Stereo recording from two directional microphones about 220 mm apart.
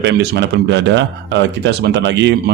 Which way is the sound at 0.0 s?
50° right (ahead or behind).